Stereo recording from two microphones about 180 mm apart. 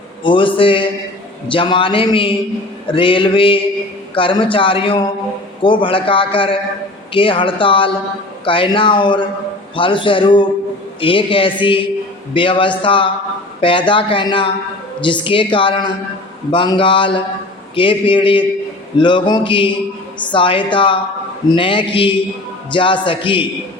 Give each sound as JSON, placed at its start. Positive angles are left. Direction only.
{"t": 0.2, "sound": "a man's voice", "side_deg": 30}